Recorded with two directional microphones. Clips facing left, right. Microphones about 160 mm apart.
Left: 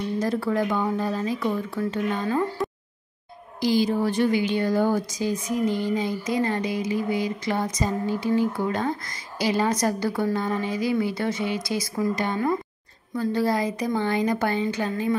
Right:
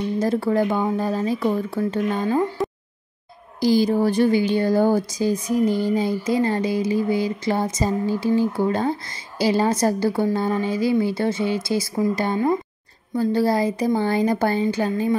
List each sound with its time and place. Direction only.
0.2 s speech: 25° right (ahead or behind)
3.6 s a woman's voice: 40° right (ahead or behind)